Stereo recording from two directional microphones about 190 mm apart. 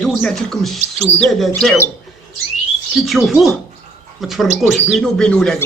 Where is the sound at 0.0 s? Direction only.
Centre (ahead or behind).